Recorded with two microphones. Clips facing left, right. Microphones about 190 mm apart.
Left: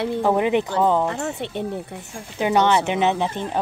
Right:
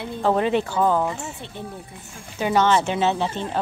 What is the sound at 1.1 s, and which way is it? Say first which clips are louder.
Speech: left 8 dB; 70° left (ahead or behind).